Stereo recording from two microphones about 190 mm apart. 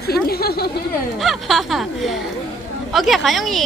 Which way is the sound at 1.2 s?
Centre (ahead or behind).